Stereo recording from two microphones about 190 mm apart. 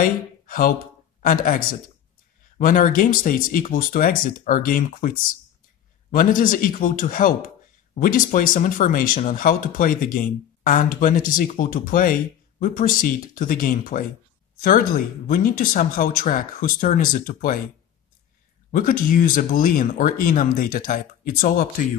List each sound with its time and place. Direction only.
0.0 s speech: 45° left (ahead or behind)
18.7 s speech: 45° left (ahead or behind)